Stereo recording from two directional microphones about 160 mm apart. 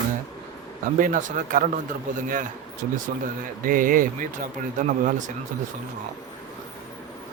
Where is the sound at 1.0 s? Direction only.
55° right (ahead or behind).